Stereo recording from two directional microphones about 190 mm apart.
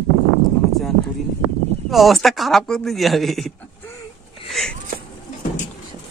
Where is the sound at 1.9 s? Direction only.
Centre (ahead or behind).